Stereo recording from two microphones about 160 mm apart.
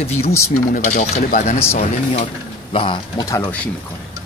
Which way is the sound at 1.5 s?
40° left (ahead or behind).